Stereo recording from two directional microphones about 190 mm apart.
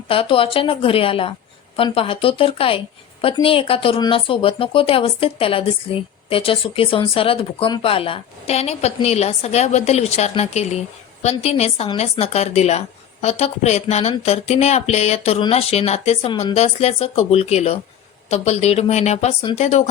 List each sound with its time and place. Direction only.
0.1 s a woman's voice: 30° left (ahead or behind)